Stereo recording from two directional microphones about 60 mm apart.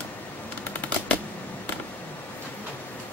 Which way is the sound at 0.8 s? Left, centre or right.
Left.